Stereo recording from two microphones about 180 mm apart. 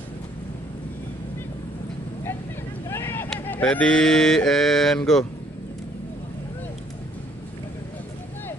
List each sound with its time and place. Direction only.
2.9 s vehicle: 10° left (ahead or behind)
3.3 s mantra: 10° left (ahead or behind)